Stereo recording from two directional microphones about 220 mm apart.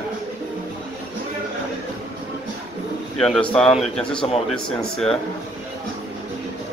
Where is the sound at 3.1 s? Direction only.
Centre (ahead or behind).